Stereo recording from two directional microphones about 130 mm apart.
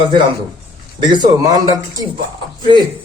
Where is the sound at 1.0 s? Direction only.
35° right (ahead or behind).